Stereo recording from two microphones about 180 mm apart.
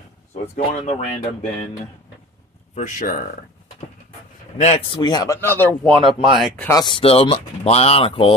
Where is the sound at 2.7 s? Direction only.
45° left (ahead or behind).